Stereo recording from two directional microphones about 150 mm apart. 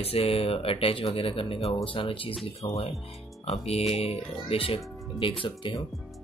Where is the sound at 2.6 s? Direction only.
25° left (ahead or behind).